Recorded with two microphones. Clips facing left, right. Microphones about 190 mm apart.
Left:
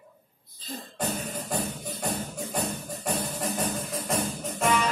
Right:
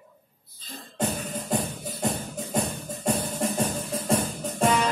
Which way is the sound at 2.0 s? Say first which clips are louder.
Right 3 dB; 25° right (ahead or behind).